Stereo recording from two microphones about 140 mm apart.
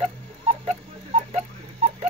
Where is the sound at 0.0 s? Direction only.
45° right (ahead or behind).